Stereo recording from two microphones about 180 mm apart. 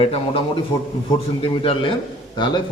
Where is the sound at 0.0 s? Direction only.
30° left (ahead or behind).